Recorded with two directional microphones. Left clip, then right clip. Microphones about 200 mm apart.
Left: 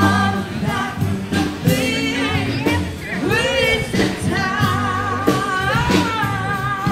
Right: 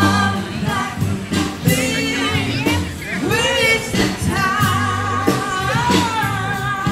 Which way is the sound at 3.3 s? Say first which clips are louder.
Right 1 dB; 30° right (ahead or behind).